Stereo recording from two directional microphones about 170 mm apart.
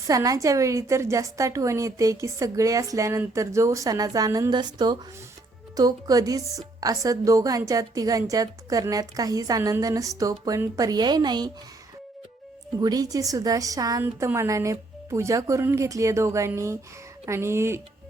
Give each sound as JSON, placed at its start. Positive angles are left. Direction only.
{"t": 0.1, "sound": "a woman's voice", "side_deg": -20}
{"t": 12.8, "sound": "a woman's voice", "side_deg": -20}